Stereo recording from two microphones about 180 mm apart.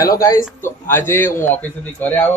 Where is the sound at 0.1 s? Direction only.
20° left (ahead or behind).